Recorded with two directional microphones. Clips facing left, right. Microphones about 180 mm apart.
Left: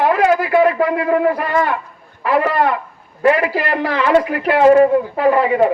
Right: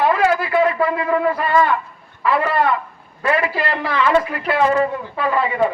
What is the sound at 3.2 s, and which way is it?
Speech, 15° left (ahead or behind).